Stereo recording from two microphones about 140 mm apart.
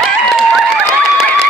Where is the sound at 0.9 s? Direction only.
20° left (ahead or behind).